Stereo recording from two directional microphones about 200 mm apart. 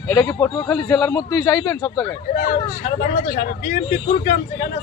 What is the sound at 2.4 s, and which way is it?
Speech, 45° left (ahead or behind).